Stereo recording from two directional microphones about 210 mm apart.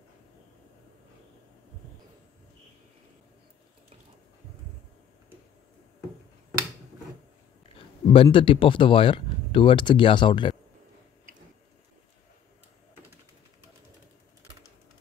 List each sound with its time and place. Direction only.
8.1 s speech: 25° left (ahead or behind)